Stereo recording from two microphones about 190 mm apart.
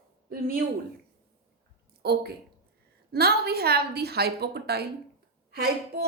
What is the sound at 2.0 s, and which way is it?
A woman's voice, 55° right (ahead or behind).